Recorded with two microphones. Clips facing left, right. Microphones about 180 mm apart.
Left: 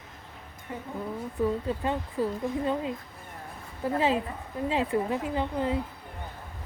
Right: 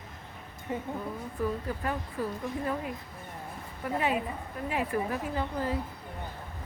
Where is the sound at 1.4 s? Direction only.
25° left (ahead or behind).